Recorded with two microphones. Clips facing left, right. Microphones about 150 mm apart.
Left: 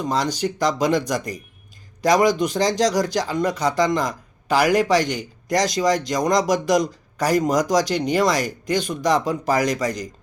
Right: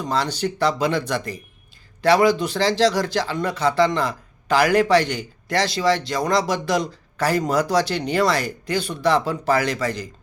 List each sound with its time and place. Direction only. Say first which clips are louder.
0.0 s speech: left 1 dB; 10° left (ahead or behind)